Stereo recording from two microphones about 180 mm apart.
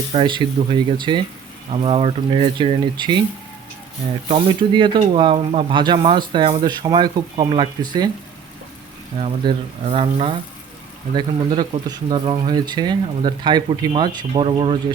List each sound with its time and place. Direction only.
0.1 s speech: 25° right (ahead or behind)
4.3 s speech: 25° right (ahead or behind)
9.2 s speech: 35° right (ahead or behind)